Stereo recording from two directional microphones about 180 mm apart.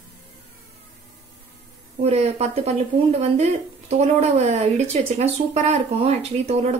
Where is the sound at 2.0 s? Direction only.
35° right (ahead or behind).